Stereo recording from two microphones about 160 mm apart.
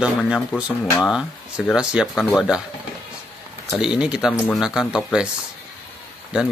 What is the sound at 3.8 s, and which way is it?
Speech, 5° right (ahead or behind).